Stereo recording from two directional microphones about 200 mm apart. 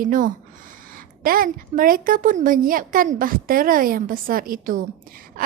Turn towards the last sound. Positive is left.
turn(degrees=-45)  # may be behind; listen again after turning